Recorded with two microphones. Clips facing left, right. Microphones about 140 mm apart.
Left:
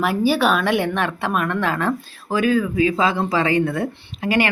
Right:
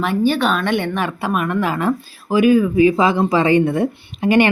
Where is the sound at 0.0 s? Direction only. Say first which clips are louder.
Right 1 dB; 5° left (ahead or behind).